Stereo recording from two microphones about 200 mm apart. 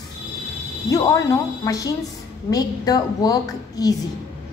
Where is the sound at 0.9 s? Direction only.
15° left (ahead or behind).